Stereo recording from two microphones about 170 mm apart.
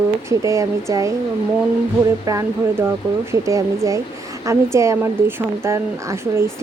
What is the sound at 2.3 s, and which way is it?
Speech, 15° right (ahead or behind).